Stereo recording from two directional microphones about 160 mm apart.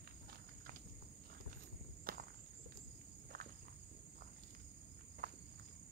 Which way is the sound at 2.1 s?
65° right (ahead or behind).